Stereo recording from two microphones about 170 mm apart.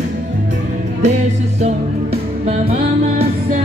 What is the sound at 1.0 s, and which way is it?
Music, 45° right (ahead or behind).